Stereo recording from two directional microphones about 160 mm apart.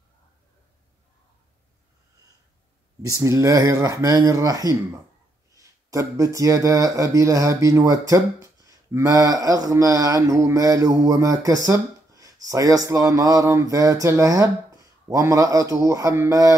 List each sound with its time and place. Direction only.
3.1 s speech: 20° right (ahead or behind)